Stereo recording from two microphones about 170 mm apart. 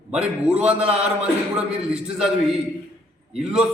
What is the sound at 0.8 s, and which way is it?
Speech, 35° right (ahead or behind).